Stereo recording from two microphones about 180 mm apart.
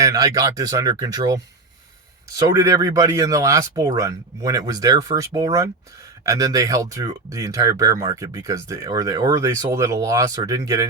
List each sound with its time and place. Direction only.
0.0 s speech: 20° right (ahead or behind)